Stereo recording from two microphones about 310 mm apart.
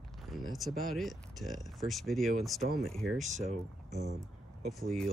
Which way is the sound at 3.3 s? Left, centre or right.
Right.